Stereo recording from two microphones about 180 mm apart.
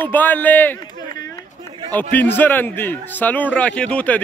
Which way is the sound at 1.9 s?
10° left (ahead or behind).